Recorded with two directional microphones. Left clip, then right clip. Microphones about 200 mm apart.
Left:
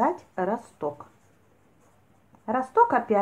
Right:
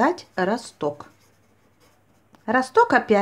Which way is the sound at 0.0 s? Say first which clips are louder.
Right 4 dB; 45° right (ahead or behind).